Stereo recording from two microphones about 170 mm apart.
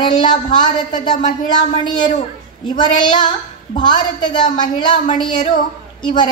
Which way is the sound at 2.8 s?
25° left (ahead or behind).